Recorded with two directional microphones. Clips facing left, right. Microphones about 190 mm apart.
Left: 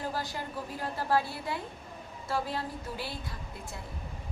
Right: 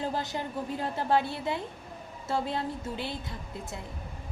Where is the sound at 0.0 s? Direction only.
20° right (ahead or behind).